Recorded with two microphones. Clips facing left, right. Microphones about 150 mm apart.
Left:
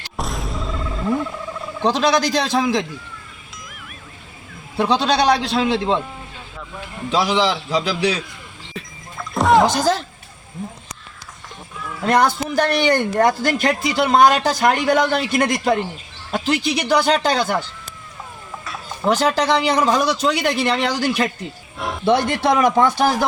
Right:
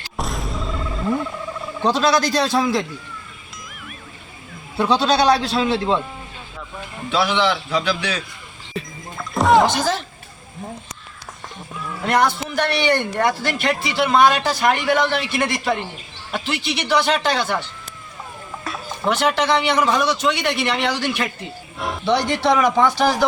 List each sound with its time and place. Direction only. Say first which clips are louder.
0.2 s a sound: even; centre (ahead or behind)
1.8 s speech: even; 15° left (ahead or behind)
4.8 s speech: even; 20° left (ahead or behind)
7.1 s a man's voice: left 1 dB; 35° left (ahead or behind)
8.7 s music: right 4 dB; centre (ahead or behind)
12.0 s a man's voice: left 2 dB; 40° left (ahead or behind)
19.0 s a man's voice: left 2 dB; 35° left (ahead or behind)
21.8 s music: even; centre (ahead or behind)
22.4 s a man's voice: left 1 dB; 45° left (ahead or behind)